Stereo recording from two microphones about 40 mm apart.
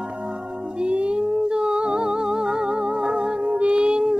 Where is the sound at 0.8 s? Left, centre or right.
Right.